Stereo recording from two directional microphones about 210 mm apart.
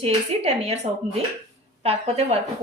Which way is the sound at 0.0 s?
30° right (ahead or behind).